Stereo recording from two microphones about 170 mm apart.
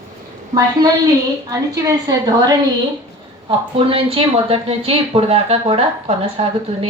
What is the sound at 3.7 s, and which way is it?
Speech, 35° right (ahead or behind).